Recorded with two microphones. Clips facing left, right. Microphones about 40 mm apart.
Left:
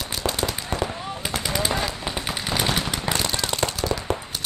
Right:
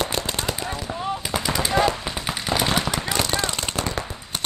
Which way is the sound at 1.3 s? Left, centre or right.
Centre.